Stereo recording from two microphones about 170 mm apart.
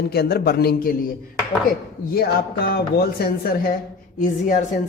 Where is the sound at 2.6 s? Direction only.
65° left (ahead or behind).